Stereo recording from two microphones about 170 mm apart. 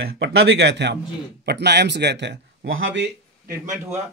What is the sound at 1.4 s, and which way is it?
Speech, 80° right.